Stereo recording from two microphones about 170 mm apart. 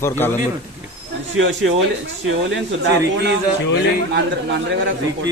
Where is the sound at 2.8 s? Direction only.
80° right.